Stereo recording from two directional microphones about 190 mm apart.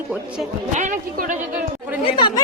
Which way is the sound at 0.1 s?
5° right (ahead or behind).